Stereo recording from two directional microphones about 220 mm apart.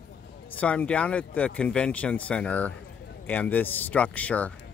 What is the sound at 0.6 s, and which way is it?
Speech, 5° left (ahead or behind).